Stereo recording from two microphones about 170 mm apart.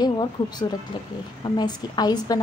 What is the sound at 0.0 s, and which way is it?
A woman's voice, 25° left (ahead or behind).